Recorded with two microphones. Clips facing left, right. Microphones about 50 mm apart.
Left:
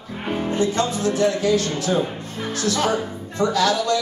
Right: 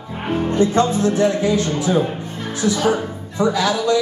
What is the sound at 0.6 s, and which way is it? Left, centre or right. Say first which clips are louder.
A man's voice: right 6 dB; right.